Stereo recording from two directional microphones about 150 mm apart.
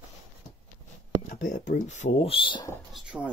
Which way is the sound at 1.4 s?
65° left (ahead or behind).